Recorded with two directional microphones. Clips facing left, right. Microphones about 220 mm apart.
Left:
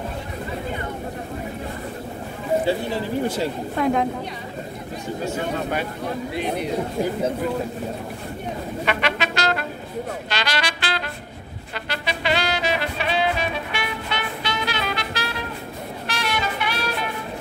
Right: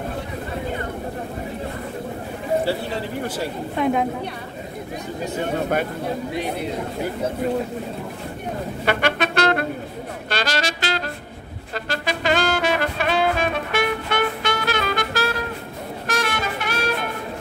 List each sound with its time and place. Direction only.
3.7 s a woman's voice: 5° right (ahead or behind)
8.8 s brass instrument: 50° right (ahead or behind)
10.3 s music: 45° right (ahead or behind)